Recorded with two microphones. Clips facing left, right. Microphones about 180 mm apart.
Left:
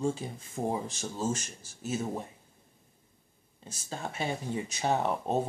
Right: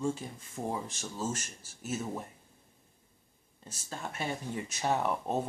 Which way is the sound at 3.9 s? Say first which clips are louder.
Left 3 dB; 25° left (ahead or behind).